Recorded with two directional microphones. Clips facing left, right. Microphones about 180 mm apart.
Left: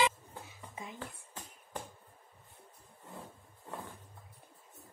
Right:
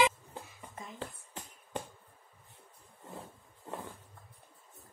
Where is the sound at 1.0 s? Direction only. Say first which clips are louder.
Right 3 dB; 25° right (ahead or behind).